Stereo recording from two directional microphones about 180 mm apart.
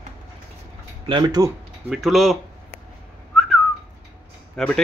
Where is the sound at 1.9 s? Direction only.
Centre (ahead or behind).